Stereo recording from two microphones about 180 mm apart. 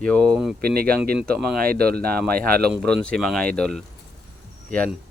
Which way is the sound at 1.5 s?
55° right (ahead or behind).